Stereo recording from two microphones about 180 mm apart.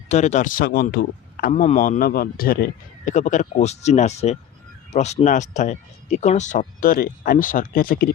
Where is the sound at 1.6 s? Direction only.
45° left (ahead or behind).